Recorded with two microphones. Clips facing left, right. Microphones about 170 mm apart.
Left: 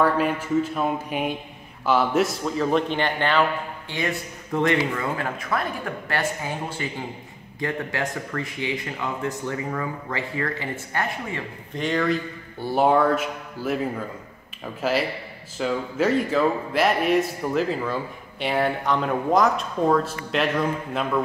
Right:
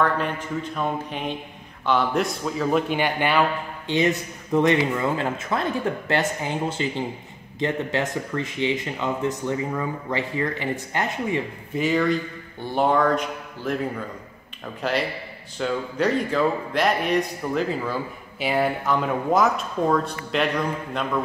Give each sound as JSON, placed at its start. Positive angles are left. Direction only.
{"t": 0.0, "sound": "a man's voice", "side_deg": 5}
{"t": 11.7, "sound": "speech", "side_deg": -5}
{"t": 14.8, "sound": "speech", "side_deg": 5}